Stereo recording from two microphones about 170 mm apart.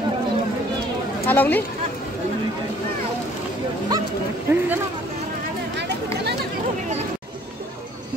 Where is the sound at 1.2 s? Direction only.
10° left (ahead or behind).